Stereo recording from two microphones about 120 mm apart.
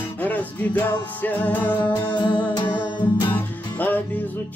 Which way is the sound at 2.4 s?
40° left (ahead or behind).